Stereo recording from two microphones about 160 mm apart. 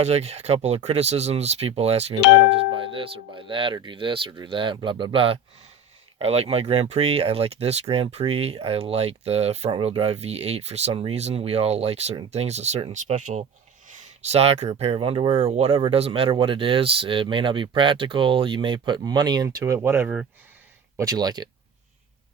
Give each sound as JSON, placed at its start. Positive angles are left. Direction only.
{"t": 0.0, "sound": "speech", "side_deg": -40}